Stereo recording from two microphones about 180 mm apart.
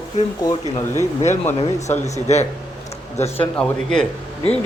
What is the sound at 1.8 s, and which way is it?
Speech, 40° left (ahead or behind).